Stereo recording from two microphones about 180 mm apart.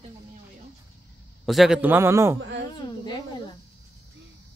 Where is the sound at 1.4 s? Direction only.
Centre (ahead or behind).